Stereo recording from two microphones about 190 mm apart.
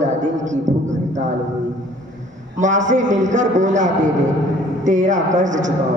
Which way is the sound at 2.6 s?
40° right (ahead or behind).